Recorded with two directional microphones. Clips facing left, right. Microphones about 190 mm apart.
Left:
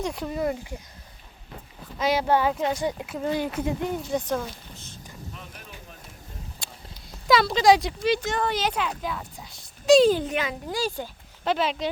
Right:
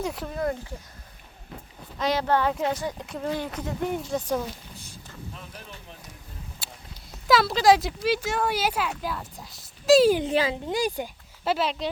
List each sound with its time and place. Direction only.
0.0 s speech: 5° right (ahead or behind)
2.0 s speech: 10° left (ahead or behind)
2.5 s speech: centre (ahead or behind)
6.6 s a sound: 5° right (ahead or behind)
7.3 s speech: centre (ahead or behind)
10.2 s speech: 30° right (ahead or behind)
10.8 s speech: 15° right (ahead or behind)
11.4 s speech: centre (ahead or behind)